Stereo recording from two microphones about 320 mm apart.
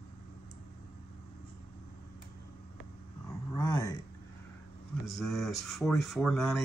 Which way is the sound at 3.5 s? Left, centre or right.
Centre.